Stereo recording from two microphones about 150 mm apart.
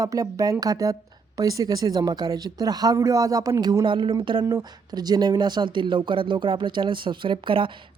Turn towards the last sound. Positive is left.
turn(degrees=-35)  # may be behind; listen again after turning